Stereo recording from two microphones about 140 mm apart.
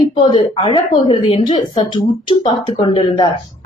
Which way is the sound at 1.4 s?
30° left (ahead or behind).